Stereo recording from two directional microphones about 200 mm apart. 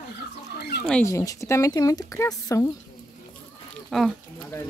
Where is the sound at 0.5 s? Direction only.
55° left (ahead or behind).